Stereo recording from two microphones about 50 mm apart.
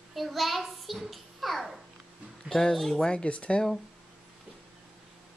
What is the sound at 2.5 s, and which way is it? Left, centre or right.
Speech, centre.